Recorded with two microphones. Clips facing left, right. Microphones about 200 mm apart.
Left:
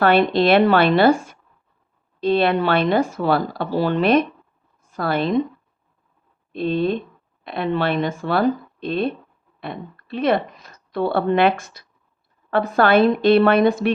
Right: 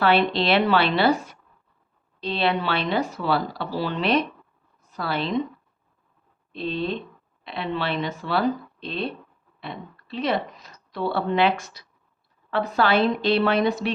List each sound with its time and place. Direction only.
0.0 s a woman's voice: 50° left (ahead or behind)
6.5 s speech: 50° left (ahead or behind)